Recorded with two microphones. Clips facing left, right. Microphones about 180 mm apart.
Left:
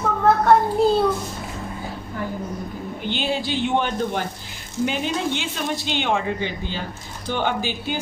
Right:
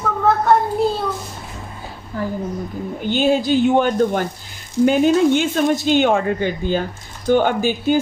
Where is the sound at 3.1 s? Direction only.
45° right (ahead or behind).